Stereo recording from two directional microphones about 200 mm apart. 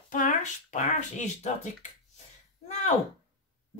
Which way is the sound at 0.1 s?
40° left (ahead or behind).